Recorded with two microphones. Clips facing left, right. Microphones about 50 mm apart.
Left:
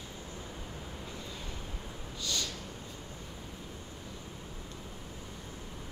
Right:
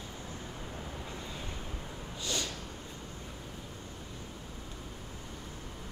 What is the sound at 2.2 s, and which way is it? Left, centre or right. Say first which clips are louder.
Snort: right 1 dB; right.